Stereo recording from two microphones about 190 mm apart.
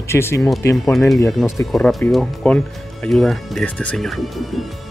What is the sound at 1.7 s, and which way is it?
Speech, centre (ahead or behind).